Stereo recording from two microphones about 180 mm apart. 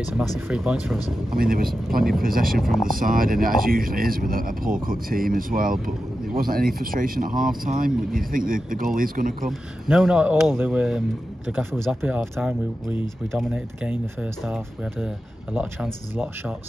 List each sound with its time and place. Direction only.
0.5 s speech: 5° right (ahead or behind)
1.3 s speech: 55° right (ahead or behind)
9.5 s speech: 5° right (ahead or behind)